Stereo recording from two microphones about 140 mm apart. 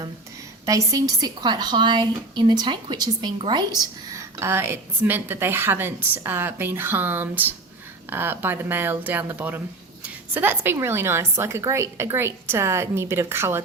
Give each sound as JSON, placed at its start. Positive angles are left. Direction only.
{"t": 0.6, "sound": "a woman's voice", "side_deg": -25}